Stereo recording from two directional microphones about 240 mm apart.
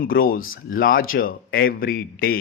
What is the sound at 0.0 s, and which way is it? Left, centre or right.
Speech, left.